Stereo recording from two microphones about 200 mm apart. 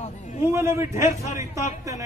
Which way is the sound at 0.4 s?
15° right (ahead or behind).